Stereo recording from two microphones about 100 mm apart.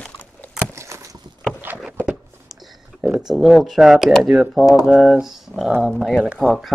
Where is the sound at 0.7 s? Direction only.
30° right (ahead or behind).